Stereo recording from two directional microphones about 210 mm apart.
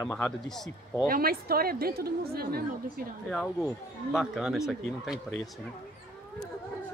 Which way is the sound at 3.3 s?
5° left (ahead or behind).